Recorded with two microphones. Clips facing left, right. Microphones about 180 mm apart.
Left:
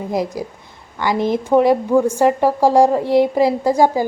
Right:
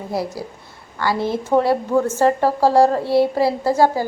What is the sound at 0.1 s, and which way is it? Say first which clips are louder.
A woman's voice: left 2 dB; 15° left (ahead or behind).